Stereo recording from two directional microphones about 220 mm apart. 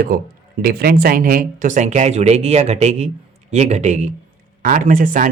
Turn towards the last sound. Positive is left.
turn(degrees=-40)  # may be behind; listen again after turning